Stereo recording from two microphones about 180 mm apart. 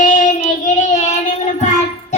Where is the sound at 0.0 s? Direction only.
45° left (ahead or behind).